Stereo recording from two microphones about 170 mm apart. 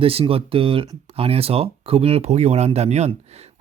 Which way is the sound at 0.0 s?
35° right (ahead or behind).